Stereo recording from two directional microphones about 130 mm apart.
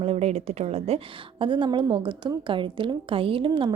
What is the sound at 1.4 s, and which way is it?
A woman's voice, 40° right (ahead or behind).